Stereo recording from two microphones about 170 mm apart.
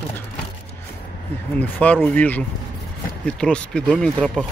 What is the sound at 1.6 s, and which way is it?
Speech, 10° left (ahead or behind).